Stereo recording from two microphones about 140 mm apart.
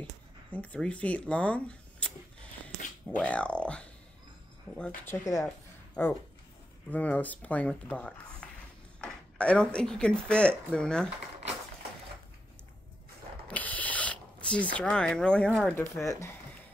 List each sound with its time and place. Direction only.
0.5 s speech: 10° left (ahead or behind)
3.2 s speech: 10° left (ahead or behind)
5.2 s speech: 20° left (ahead or behind); by 11.1 s 5° left (ahead or behind)
13.5 s a sound: 10° left (ahead or behind)
15.7 s speech: 20° left (ahead or behind)